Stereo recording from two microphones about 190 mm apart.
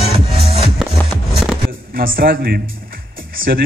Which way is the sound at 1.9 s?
50° right (ahead or behind).